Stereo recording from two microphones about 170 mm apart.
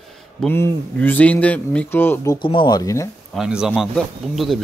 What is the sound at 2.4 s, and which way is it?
Speech, 30° left (ahead or behind).